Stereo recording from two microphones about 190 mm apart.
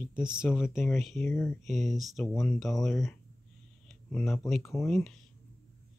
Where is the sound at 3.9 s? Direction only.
5° left (ahead or behind).